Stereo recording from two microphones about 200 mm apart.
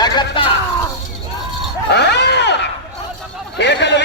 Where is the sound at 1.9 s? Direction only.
55° left (ahead or behind).